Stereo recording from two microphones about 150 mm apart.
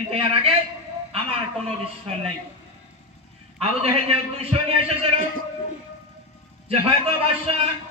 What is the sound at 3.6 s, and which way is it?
A man's voice, 40° right (ahead or behind).